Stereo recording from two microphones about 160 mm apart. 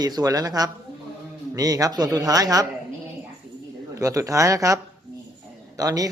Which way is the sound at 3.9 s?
20° right (ahead or behind).